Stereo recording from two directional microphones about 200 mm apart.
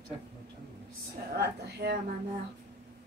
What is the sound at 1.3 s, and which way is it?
Speech, 55° right (ahead or behind).